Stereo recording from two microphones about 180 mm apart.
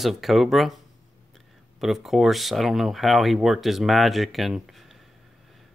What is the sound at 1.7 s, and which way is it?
Speech, centre (ahead or behind).